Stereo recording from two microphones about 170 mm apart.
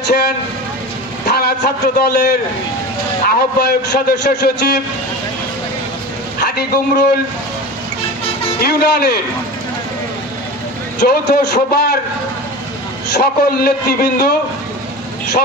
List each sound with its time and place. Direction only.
0.0 s a man's voice: 70° left (ahead or behind)
6.4 s a man's voice: 70° left (ahead or behind)
8.5 s a man's voice: 65° left (ahead or behind)
11.0 s a man's voice: 75° left (ahead or behind)
13.1 s a man's voice: 65° left (ahead or behind)